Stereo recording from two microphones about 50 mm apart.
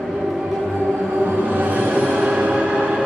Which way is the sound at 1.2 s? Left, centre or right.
Right.